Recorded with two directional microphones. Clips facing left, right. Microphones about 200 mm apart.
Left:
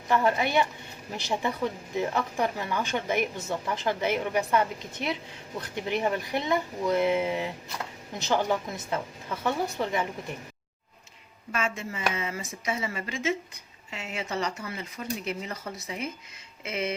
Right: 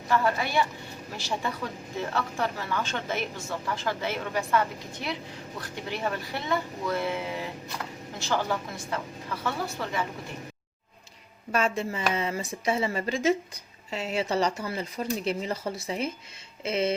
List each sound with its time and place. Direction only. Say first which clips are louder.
0.1 s speech: left 2 dB; 20° left (ahead or behind)
11.5 s a woman's voice: right 5 dB; 35° right (ahead or behind)